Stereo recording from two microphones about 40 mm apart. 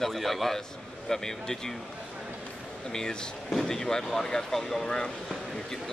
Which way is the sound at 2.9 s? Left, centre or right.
Centre.